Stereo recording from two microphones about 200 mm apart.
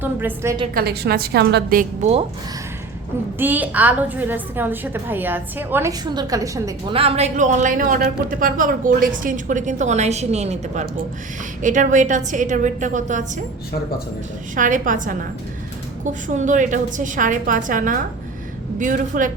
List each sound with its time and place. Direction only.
0.0 s a woman's voice: 10° right (ahead or behind)
0.7 s a woman's voice: 50° right (ahead or behind)
1.8 s speech: 35° right (ahead or behind)
3.3 s a woman's voice: 10° right (ahead or behind)
6.9 s speech: 30° right (ahead or behind)
14.5 s speech: 40° right (ahead or behind)
16.2 s speech: 40° right (ahead or behind)